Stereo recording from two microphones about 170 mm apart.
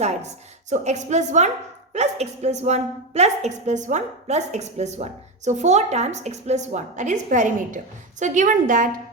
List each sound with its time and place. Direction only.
0.0 s a woman's voice: 40° right (ahead or behind)